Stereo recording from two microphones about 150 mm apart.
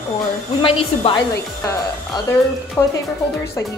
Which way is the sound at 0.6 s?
35° left (ahead or behind).